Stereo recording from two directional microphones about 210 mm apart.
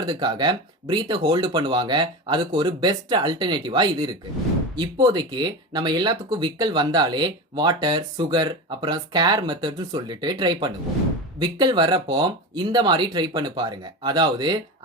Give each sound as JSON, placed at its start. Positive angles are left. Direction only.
{"t": 0.0, "sound": "speech", "side_deg": -20}